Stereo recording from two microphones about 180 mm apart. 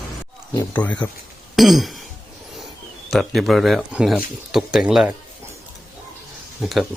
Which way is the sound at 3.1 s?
Centre (ahead or behind).